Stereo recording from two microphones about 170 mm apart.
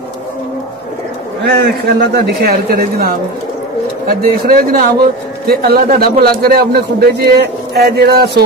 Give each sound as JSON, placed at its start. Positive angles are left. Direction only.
{"t": 1.4, "sound": "a man's voice", "side_deg": -65}
{"t": 4.1, "sound": "a man's voice", "side_deg": -60}